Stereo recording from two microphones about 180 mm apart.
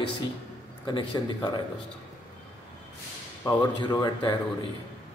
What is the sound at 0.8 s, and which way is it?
Speech, 25° left (ahead or behind).